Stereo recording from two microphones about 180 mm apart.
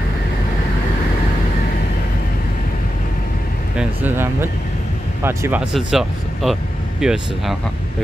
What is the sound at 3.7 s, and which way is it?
Speech, 10° right (ahead or behind).